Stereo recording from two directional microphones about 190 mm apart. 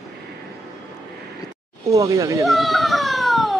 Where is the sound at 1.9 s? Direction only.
15° right (ahead or behind).